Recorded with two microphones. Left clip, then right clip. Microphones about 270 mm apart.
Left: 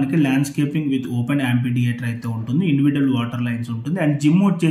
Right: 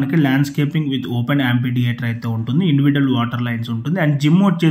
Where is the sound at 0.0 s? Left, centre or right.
Centre.